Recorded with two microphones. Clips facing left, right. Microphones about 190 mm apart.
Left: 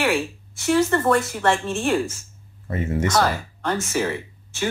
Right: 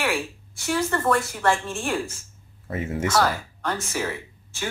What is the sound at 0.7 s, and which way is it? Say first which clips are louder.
Speech: left 4 dB; 20° left (ahead or behind).